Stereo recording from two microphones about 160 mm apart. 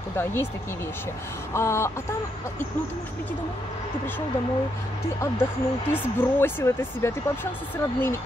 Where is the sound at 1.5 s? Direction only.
15° left (ahead or behind).